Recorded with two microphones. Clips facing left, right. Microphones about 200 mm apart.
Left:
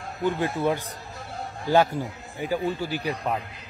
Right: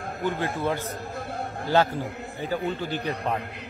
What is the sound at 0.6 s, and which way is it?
A man's voice, 15° left (ahead or behind).